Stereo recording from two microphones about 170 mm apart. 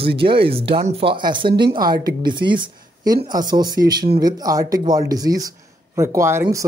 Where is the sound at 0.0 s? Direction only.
30° right (ahead or behind).